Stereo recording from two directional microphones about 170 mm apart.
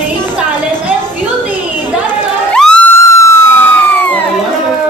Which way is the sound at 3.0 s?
15° left (ahead or behind).